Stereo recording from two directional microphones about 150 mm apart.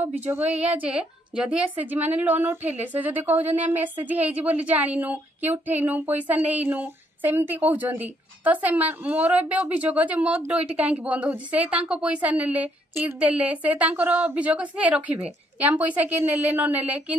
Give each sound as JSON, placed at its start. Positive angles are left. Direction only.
{"t": 0.0, "sound": "a woman's voice", "side_deg": -10}